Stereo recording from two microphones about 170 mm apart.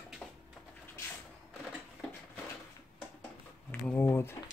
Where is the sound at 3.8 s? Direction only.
10° left (ahead or behind).